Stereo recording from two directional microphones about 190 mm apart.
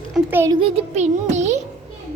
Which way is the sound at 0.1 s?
10° right (ahead or behind).